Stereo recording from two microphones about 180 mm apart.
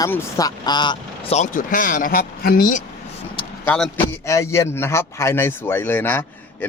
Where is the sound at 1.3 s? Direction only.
45° left (ahead or behind).